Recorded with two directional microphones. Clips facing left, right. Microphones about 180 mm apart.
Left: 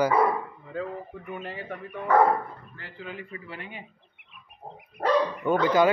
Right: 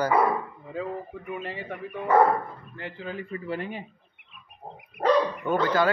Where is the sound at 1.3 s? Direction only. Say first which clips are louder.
Right 2 dB; centre (ahead or behind).